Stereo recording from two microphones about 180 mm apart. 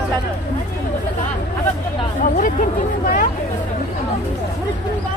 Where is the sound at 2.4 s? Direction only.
50° left (ahead or behind).